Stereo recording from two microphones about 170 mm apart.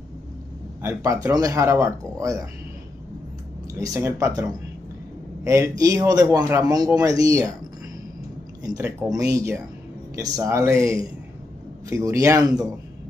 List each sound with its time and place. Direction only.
0.8 s a man's voice: 20° right (ahead or behind)
3.7 s a man's voice: 20° right (ahead or behind)
8.6 s a man's voice: 20° right (ahead or behind)